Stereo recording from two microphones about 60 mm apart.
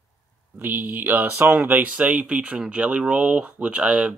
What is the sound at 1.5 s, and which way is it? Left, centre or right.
Speech, right.